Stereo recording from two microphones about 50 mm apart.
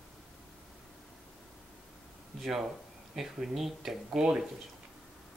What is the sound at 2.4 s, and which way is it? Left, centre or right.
Speech, centre.